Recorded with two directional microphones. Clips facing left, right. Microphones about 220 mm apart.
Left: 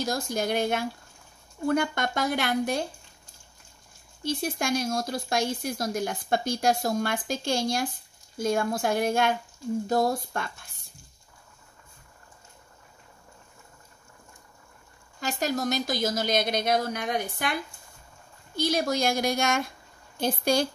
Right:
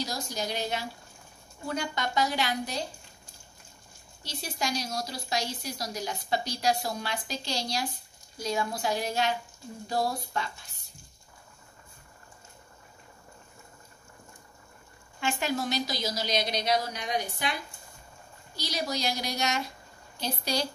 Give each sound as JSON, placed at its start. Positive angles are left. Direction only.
{"t": 0.0, "sound": "speech", "side_deg": 50}
{"t": 4.2, "sound": "speech", "side_deg": 55}
{"t": 15.1, "sound": "speech", "side_deg": 40}
{"t": 18.6, "sound": "speech", "side_deg": 50}